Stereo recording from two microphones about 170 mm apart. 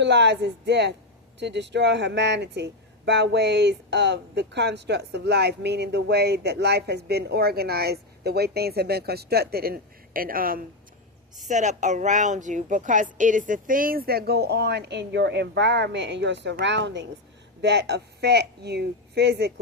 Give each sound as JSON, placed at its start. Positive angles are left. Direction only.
{"t": 0.0, "sound": "speech", "side_deg": -90}
{"t": 11.4, "sound": "speech", "side_deg": -45}